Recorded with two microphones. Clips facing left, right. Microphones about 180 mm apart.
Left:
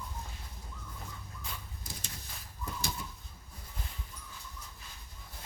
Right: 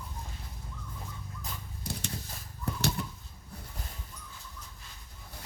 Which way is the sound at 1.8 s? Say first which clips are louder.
Right 9 dB; 65° right (ahead or behind).